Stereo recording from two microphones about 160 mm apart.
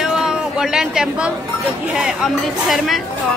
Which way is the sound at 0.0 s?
5° right (ahead or behind).